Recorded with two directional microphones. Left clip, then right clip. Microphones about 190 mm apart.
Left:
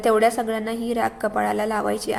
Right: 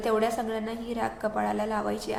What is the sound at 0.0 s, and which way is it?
A woman's voice, 30° left (ahead or behind).